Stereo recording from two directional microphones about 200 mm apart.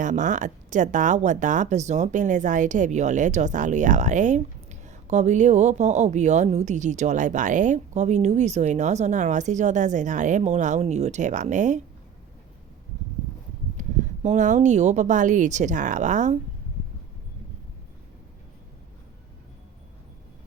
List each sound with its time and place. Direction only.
0.0 s speech: 40° right (ahead or behind)
13.7 s speech: 35° right (ahead or behind)